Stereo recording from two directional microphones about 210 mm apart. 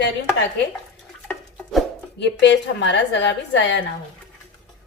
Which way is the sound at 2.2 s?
60° left (ahead or behind).